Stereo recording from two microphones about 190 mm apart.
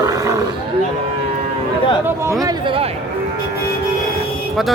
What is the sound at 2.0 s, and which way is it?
Speech, 15° right (ahead or behind).